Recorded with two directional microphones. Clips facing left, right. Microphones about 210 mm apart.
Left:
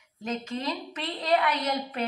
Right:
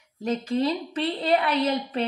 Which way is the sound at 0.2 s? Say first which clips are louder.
Right 7 dB; 35° right (ahead or behind).